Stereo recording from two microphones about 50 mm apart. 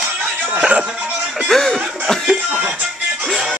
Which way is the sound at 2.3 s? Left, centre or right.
Right.